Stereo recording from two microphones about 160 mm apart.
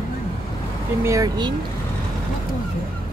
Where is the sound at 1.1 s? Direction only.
25° right (ahead or behind).